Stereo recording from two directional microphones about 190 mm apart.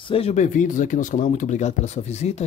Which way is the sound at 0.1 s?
35° left (ahead or behind).